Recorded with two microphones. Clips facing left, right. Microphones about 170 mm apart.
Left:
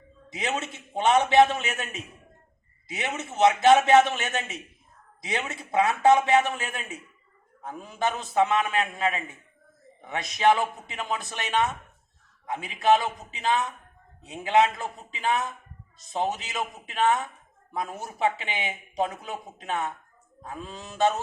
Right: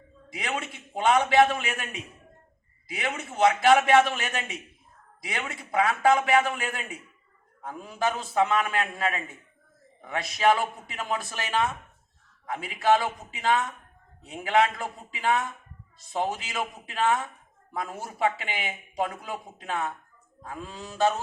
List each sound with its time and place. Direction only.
0.3 s a man's voice: 25° left (ahead or behind)